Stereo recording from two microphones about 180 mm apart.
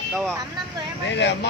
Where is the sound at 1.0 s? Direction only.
75° left (ahead or behind).